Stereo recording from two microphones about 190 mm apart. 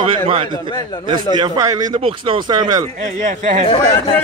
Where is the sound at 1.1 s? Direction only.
20° right (ahead or behind).